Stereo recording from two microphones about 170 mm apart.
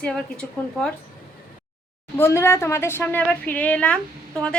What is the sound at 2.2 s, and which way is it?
A woman's voice, 15° left (ahead or behind).